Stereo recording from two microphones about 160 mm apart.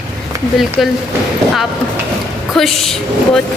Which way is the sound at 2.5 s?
Centre (ahead or behind).